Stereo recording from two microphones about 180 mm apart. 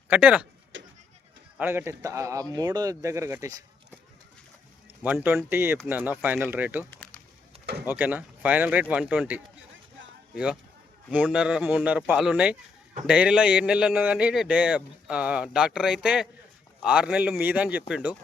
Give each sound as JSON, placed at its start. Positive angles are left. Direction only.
{"t": 0.1, "sound": "speech", "side_deg": -5}
{"t": 1.5, "sound": "speech", "side_deg": -15}
{"t": 5.0, "sound": "speech", "side_deg": -10}
{"t": 7.9, "sound": "a man's voice", "side_deg": -10}